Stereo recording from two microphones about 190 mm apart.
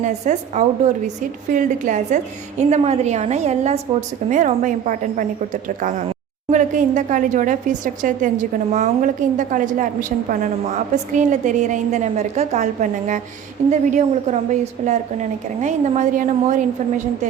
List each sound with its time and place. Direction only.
0.0 s a woman's voice: 40° right (ahead or behind)